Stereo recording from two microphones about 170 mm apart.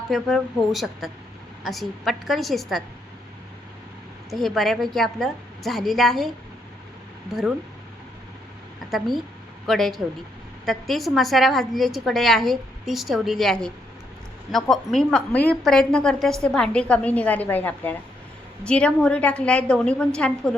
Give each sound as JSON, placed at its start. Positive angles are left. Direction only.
{"t": 0.1, "sound": "a woman's voice", "side_deg": 0}
{"t": 4.3, "sound": "a woman's voice", "side_deg": 0}
{"t": 8.9, "sound": "a woman's voice", "side_deg": 0}